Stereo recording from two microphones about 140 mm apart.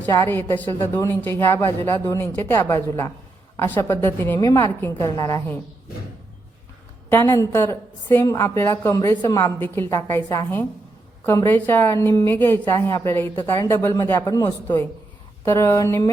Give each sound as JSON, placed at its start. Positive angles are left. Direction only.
{"t": 0.1, "sound": "a woman's voice", "side_deg": 20}
{"t": 7.1, "sound": "a woman's voice", "side_deg": 20}